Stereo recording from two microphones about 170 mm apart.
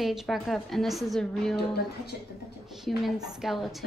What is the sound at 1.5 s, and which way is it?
Speech, 70° left (ahead or behind).